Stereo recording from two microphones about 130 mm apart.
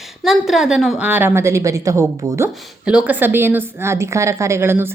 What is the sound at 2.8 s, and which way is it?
A woman's voice, 5° right (ahead or behind).